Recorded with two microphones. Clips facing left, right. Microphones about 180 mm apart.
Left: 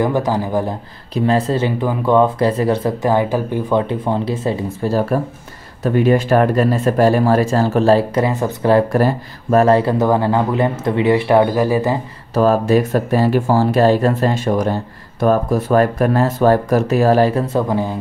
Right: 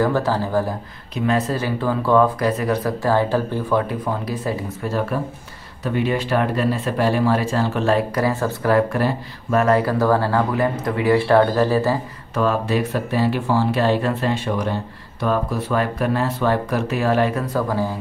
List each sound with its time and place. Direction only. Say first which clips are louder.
0.0 s a man's voice: left 2 dB; 15° left (ahead or behind)
1.1 s speech: left 4 dB; 30° left (ahead or behind)
5.9 s speech: left 7 dB; 45° left (ahead or behind); by 8.7 s 20° left (ahead or behind)
8.9 s speech: left 5 dB; 40° left (ahead or behind); by 12.0 s 15° left (ahead or behind)
12.4 s speech: left 6 dB; 40° left (ahead or behind); by 17.9 s 20° left (ahead or behind)